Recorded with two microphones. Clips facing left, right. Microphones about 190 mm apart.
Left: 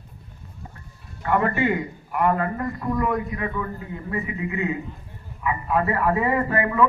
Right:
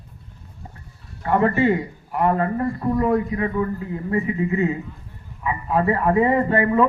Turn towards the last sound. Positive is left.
turn(degrees=-30)  # may be behind; listen again after turning